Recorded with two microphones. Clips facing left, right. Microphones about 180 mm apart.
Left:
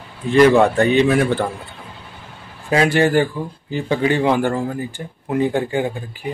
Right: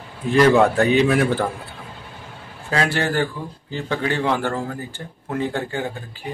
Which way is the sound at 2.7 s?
15° left (ahead or behind).